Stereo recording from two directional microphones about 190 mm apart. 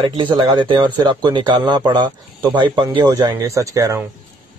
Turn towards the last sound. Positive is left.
turn(degrees=-15)  # may be behind; listen again after turning